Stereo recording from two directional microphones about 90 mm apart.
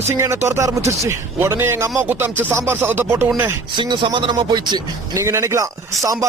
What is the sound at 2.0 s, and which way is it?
Music, 25° right (ahead or behind).